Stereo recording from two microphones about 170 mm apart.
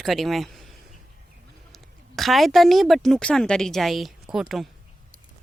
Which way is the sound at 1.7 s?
Centre (ahead or behind).